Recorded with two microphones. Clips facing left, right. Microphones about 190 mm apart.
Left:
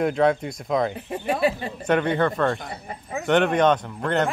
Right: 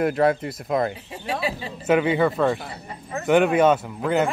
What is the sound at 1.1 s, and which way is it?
Speech, 55° left (ahead or behind).